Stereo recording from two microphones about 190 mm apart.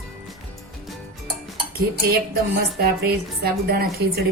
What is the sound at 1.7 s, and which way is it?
A woman's voice, 55° right (ahead or behind).